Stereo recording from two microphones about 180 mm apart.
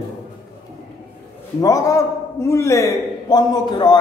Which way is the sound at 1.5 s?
20° left (ahead or behind).